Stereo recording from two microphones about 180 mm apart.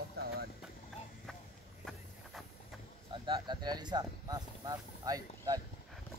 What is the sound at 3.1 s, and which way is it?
Speech, 25° right (ahead or behind).